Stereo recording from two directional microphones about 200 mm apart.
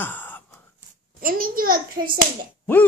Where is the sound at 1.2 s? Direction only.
45° right (ahead or behind).